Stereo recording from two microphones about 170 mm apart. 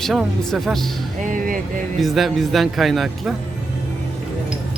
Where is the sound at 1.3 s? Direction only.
55° right (ahead or behind).